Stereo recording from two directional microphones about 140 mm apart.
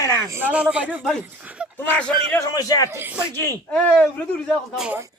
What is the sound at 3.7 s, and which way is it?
Speech, 5° left (ahead or behind).